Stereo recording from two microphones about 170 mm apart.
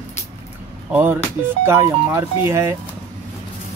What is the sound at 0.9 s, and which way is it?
Speech, 10° right (ahead or behind).